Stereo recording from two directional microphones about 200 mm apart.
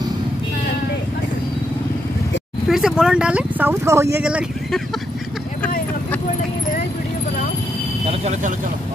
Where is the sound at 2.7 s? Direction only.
5° right (ahead or behind).